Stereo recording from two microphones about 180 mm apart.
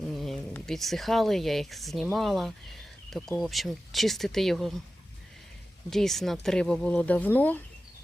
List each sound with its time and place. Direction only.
0.2 s speech: centre (ahead or behind)
5.9 s speech: centre (ahead or behind)